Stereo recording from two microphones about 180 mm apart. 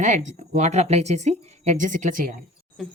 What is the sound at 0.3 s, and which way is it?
Speech, 40° right (ahead or behind).